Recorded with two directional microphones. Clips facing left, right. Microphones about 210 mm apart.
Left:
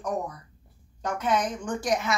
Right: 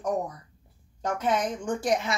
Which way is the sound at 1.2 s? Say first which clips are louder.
Even; 25° right (ahead or behind).